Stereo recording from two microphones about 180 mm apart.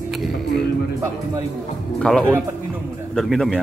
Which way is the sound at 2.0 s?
5° left (ahead or behind).